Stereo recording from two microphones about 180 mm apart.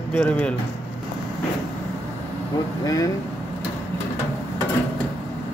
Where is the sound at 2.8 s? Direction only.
20° left (ahead or behind).